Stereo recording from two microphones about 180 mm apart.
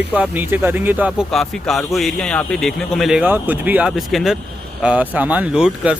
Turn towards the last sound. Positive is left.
turn(degrees=-5)  # may be behind; listen again after turning